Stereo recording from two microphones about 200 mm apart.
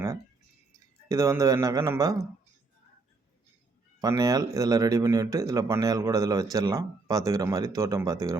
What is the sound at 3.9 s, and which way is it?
Speech, 20° right (ahead or behind).